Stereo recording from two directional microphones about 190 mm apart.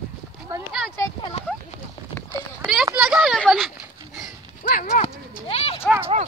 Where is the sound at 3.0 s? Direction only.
Centre (ahead or behind).